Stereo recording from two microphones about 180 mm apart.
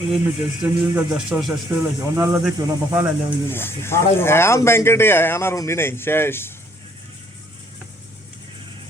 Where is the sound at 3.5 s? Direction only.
10° left (ahead or behind).